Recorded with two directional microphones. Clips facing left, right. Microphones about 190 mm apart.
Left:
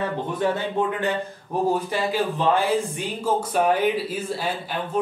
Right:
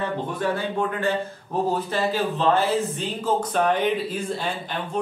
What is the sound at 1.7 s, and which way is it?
A man's voice, 10° left (ahead or behind).